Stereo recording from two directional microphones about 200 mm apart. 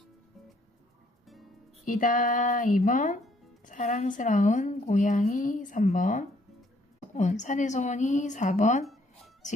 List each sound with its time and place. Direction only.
1.8 s a woman's voice: 40° left (ahead or behind)
8.8 s music: centre (ahead or behind)